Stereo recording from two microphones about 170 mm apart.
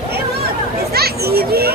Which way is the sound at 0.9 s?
65° right (ahead or behind).